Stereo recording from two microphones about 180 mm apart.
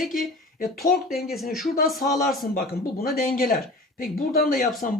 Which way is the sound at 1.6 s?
55° left (ahead or behind).